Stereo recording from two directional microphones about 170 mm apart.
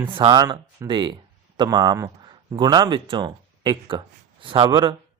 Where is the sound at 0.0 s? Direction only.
30° right (ahead or behind).